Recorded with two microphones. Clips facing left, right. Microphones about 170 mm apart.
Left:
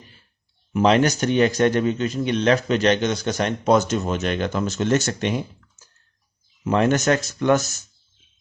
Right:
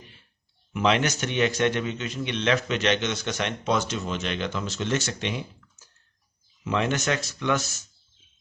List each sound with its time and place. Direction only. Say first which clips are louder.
0.7 s a man's voice: left 6 dB; 40° left (ahead or behind)
6.7 s speech: left 7 dB; 45° left (ahead or behind)